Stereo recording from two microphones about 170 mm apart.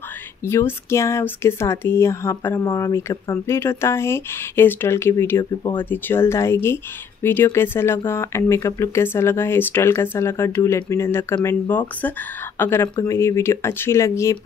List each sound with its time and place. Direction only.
0.5 s speech: 15° left (ahead or behind)